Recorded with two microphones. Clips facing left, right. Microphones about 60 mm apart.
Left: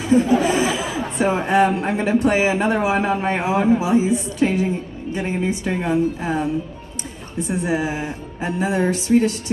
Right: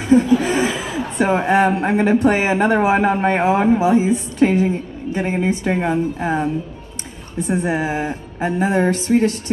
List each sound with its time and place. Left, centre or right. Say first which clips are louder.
0.0 s speech: right 2 dB; right